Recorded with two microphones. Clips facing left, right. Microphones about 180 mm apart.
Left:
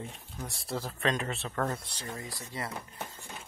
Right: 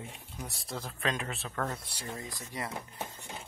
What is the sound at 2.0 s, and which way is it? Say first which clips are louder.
Speech: even; 20° right (ahead or behind).